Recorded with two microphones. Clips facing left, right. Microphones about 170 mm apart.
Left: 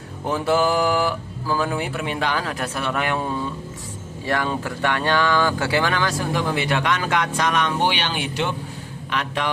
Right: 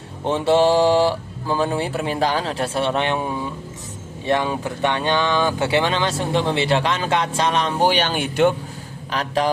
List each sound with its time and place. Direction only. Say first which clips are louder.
0.3 s speech: right 4 dB; 25° right (ahead or behind)
3.2 s speech: even; 15° right (ahead or behind); by 8.5 s 50° right (ahead or behind)
9.0 s speech: right 4 dB; 35° right (ahead or behind)